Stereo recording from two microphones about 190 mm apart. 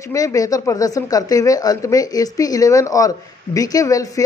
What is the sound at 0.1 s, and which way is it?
Speech, 15° left (ahead or behind).